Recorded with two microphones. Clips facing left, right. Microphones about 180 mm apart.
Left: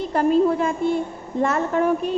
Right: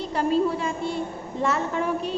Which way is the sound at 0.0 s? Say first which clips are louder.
Left 5 dB; 50° left (ahead or behind).